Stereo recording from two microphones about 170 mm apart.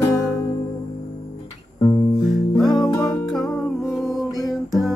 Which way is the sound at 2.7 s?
20° left (ahead or behind).